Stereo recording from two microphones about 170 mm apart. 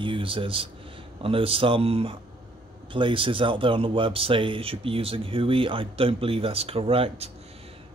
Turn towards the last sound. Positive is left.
turn(degrees=-35)  # may be behind; listen again after turning